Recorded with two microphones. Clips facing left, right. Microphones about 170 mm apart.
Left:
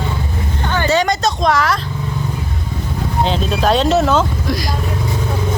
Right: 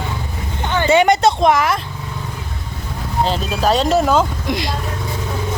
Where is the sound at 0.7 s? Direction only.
20° right (ahead or behind).